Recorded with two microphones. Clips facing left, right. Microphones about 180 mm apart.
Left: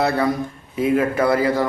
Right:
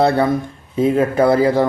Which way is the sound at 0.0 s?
30° right (ahead or behind).